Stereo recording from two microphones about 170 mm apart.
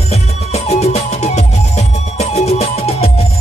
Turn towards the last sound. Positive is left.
turn(degrees=35)  # may be behind; listen again after turning